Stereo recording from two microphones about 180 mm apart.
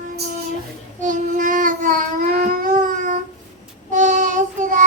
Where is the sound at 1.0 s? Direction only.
45° right (ahead or behind).